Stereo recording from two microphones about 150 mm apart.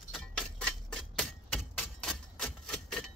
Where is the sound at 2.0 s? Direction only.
5° left (ahead or behind).